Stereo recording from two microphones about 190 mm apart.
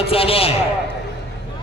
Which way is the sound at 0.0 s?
30° left (ahead or behind).